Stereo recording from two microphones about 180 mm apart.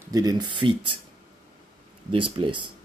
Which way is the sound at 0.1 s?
20° right (ahead or behind).